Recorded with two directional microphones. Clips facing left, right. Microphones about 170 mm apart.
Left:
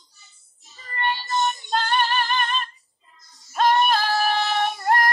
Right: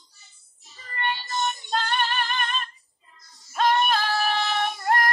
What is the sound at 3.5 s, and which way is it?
Female singing, 35° left (ahead or behind).